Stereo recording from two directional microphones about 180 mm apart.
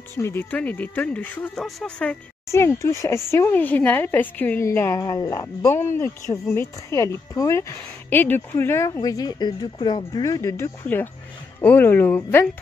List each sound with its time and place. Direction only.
0.2 s a woman's voice: 10° left (ahead or behind)